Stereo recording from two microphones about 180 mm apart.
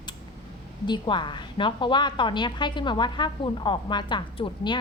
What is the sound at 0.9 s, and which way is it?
A woman's voice, 25° left (ahead or behind).